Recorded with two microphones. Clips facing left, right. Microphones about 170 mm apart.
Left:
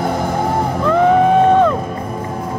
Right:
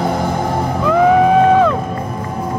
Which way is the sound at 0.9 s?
5° right (ahead or behind).